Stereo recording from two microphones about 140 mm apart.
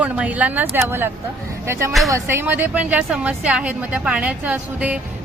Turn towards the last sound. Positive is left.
turn(degrees=-10)  # may be behind; listen again after turning